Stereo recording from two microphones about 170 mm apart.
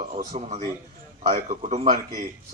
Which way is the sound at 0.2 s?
45° right (ahead or behind).